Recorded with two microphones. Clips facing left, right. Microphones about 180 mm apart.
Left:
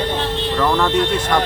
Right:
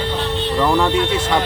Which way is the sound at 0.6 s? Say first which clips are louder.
Right 1 dB; 10° right (ahead or behind).